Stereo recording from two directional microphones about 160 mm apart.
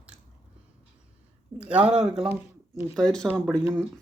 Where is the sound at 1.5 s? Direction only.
10° right (ahead or behind).